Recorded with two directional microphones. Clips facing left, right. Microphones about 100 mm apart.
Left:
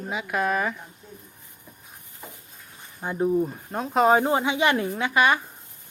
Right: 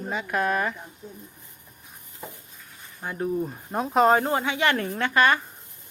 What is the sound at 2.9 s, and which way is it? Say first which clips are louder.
Speech: left 4 dB; 15° left (ahead or behind).